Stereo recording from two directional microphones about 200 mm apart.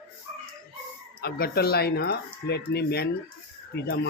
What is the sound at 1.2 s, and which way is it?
Speech, 50° left (ahead or behind).